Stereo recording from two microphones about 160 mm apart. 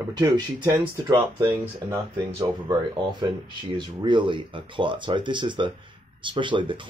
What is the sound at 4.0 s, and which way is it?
Speech, 30° right (ahead or behind).